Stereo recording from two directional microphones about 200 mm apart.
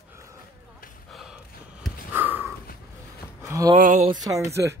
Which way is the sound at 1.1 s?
Centre (ahead or behind).